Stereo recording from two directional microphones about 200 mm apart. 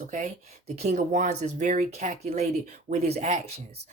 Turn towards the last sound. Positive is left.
turn(degrees=-35)  # may be behind; listen again after turning